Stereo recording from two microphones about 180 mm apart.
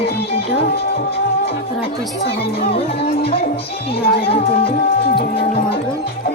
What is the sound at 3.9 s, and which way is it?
Speech, 60° left (ahead or behind).